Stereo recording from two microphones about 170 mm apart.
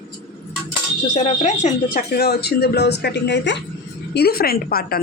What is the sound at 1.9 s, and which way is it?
Speech, 65° left (ahead or behind).